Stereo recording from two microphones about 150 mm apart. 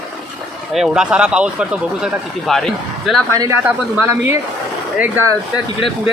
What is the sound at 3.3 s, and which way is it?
Speech, 20° right (ahead or behind).